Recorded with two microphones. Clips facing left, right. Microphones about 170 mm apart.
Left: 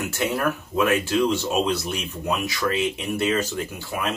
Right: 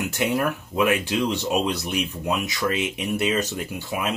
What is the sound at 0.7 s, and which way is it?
Speech, 15° right (ahead or behind).